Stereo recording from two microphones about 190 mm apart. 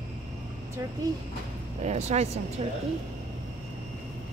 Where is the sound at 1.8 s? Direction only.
35° right (ahead or behind).